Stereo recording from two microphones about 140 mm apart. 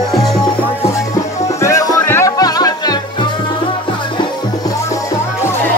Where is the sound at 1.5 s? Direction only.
20° left (ahead or behind).